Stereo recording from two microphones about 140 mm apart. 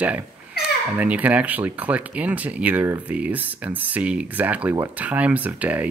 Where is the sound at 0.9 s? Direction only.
10° right (ahead or behind).